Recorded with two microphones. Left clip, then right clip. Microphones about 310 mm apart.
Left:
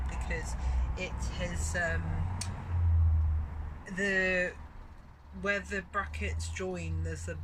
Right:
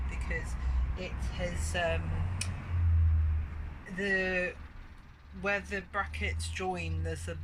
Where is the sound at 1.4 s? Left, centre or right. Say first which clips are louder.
Right 1 dB; centre.